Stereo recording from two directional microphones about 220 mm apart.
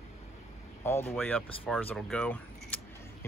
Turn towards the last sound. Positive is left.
turn(degrees=5)  # may be behind; listen again after turning